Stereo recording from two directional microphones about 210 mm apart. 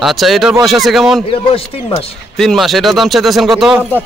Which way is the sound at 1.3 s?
25° left (ahead or behind).